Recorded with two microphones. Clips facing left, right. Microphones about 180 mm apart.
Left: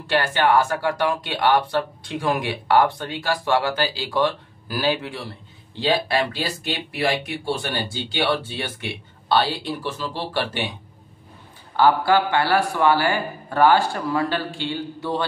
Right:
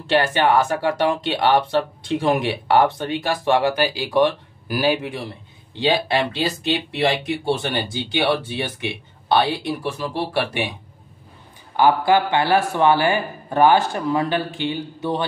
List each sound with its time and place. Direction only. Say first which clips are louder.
0.0 s speech: right 2 dB; 20° right (ahead or behind)
11.7 s speech: right 1 dB; 15° right (ahead or behind)